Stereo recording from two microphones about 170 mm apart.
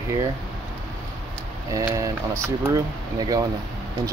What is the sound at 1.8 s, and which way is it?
Speech, 20° right (ahead or behind).